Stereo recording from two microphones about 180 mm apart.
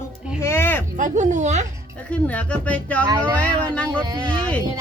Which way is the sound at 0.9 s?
45° right (ahead or behind).